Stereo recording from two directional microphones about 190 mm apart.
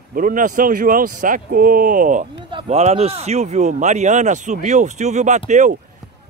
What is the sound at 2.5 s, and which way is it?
Speech, 30° right (ahead or behind).